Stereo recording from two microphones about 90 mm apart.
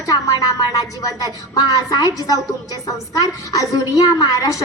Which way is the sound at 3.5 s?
40° left (ahead or behind).